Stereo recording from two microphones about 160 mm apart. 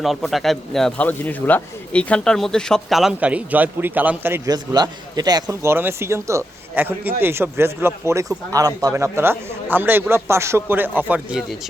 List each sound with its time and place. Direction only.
0.0 s a man's voice: centre (ahead or behind)
4.4 s a man's voice: 25° right (ahead or behind); by 11.4 s 10° right (ahead or behind)